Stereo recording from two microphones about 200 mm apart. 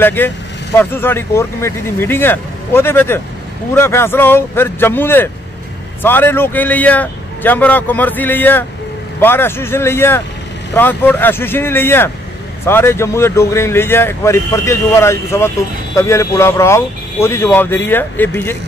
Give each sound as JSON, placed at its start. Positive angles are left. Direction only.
{"t": 0.0, "sound": "speech", "side_deg": 10}